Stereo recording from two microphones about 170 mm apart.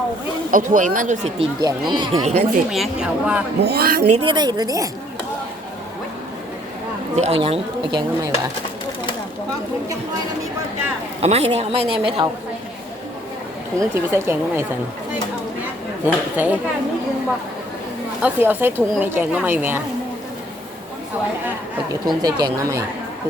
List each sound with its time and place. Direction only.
0.5 s speech: 50° right (ahead or behind)
1.4 s speech: 25° right (ahead or behind)
2.6 s speech: centre (ahead or behind)
3.6 s speech: 65° right (ahead or behind)
4.1 s speech: 30° right (ahead or behind)
7.2 s a woman's voice: 35° right (ahead or behind)
11.2 s a woman's voice: 35° right (ahead or behind)
13.7 s speech: 15° right (ahead or behind)
16.0 s speech: 10° right (ahead or behind)
18.2 s speech: 10° right (ahead or behind)
22.0 s speech: 25° right (ahead or behind)